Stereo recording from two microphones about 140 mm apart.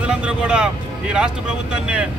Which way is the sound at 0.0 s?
10° right (ahead or behind).